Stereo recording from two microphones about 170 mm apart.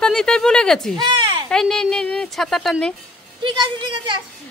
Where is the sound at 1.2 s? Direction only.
30° right (ahead or behind).